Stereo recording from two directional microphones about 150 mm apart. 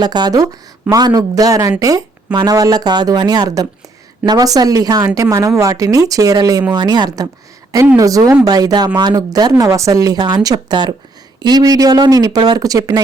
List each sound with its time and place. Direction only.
0.0 s speech: 30° right (ahead or behind)